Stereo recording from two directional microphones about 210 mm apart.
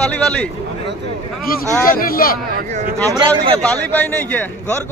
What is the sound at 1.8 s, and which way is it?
Speech, 45° left (ahead or behind).